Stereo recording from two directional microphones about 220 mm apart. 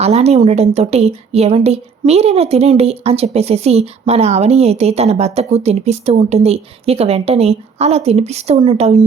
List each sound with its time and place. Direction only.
0.0 s a woman's voice: 30° right (ahead or behind)